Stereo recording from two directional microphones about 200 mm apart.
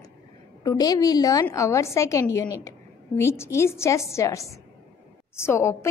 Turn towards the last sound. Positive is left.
turn(degrees=15)  # may be behind; listen again after turning